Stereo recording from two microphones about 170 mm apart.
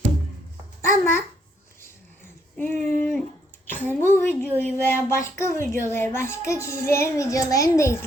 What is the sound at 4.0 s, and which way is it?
A child's voice, 15° left (ahead or behind).